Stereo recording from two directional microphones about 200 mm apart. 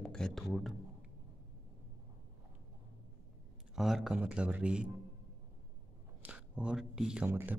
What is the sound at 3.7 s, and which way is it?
Speech, centre (ahead or behind).